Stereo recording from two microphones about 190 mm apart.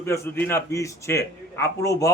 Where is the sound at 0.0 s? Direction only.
15° left (ahead or behind).